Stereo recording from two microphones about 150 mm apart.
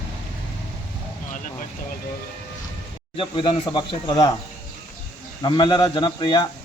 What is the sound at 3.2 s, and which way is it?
Speech, 35° left (ahead or behind).